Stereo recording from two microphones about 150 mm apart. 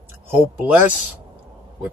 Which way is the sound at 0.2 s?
10° right (ahead or behind).